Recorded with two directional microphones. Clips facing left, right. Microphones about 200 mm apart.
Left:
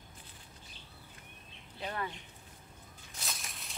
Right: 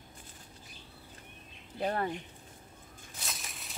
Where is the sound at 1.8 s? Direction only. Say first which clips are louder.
Right 7 dB; 40° right (ahead or behind).